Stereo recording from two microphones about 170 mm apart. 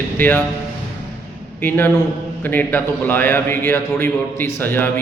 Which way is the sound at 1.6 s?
10° left (ahead or behind).